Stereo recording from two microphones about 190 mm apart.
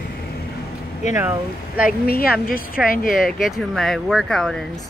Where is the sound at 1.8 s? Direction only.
50° left (ahead or behind).